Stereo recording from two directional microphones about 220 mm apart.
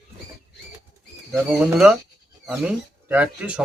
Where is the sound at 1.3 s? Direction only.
5° right (ahead or behind).